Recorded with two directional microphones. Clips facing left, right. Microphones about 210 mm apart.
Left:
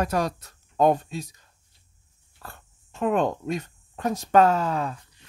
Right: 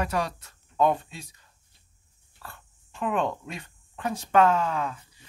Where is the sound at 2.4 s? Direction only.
40° left (ahead or behind).